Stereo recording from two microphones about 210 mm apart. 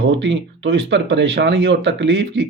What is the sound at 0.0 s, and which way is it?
Speech, 60° right (ahead or behind).